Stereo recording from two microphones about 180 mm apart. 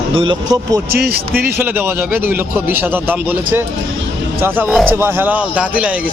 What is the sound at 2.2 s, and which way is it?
Speech, 10° right (ahead or behind).